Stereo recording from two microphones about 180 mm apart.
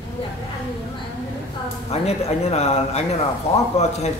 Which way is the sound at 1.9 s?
35° left (ahead or behind).